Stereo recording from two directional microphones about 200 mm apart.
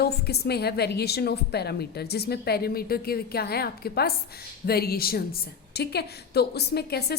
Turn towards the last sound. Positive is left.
turn(degrees=55)  # may be behind; listen again after turning